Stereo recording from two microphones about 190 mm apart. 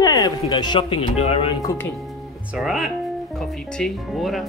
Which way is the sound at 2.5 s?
Centre (ahead or behind).